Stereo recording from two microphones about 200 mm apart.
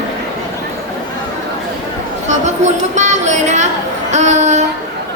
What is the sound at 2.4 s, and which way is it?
A woman's voice, 35° right (ahead or behind).